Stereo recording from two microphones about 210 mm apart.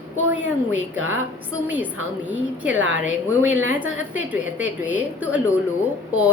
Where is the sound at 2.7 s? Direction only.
60° right (ahead or behind).